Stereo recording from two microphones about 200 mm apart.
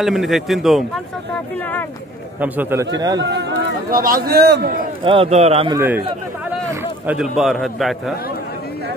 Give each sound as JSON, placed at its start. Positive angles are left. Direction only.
{"t": 0.0, "sound": "speech", "side_deg": 0}
{"t": 2.4, "sound": "a man's voice", "side_deg": -10}
{"t": 3.2, "sound": "speech", "side_deg": -60}
{"t": 5.0, "sound": "a man's voice", "side_deg": -25}
{"t": 5.8, "sound": "a man's voice", "side_deg": -10}
{"t": 6.7, "sound": "a sound", "side_deg": -10}
{"t": 7.3, "sound": "speech", "side_deg": 0}